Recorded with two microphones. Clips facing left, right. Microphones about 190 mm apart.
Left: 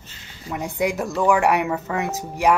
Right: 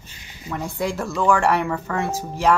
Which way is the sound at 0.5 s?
15° left (ahead or behind).